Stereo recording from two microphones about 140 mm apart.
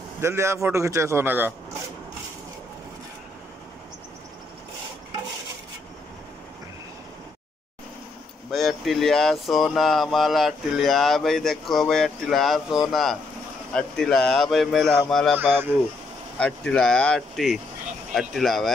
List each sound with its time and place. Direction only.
0.2 s a man's voice: 20° right (ahead or behind)
8.5 s speech: centre (ahead or behind)
16.3 s speech: 5° left (ahead or behind)